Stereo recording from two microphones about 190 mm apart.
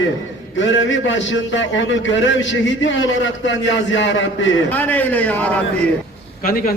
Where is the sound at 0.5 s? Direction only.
75° left (ahead or behind).